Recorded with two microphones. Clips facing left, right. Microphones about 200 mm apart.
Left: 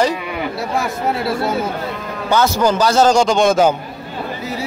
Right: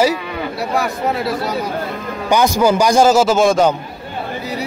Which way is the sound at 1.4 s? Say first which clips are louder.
Left 2 dB; 25° left (ahead or behind).